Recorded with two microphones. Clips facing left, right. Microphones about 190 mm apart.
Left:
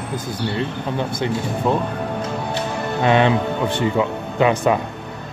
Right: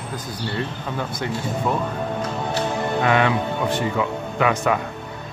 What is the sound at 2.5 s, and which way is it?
Speech, 25° left (ahead or behind).